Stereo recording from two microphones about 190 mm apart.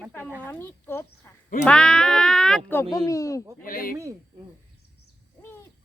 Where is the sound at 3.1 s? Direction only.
15° left (ahead or behind).